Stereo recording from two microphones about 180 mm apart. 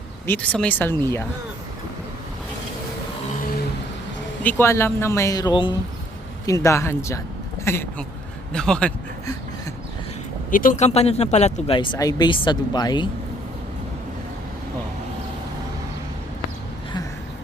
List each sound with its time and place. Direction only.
0.3 s speech: 5° left (ahead or behind)
4.4 s speech: 15° left (ahead or behind)
10.5 s speech: 50° left (ahead or behind); by 13.1 s 20° left (ahead or behind)